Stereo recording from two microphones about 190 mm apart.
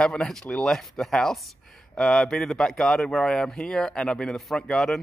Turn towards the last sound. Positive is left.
turn(degrees=0)  # may be behind; listen again after turning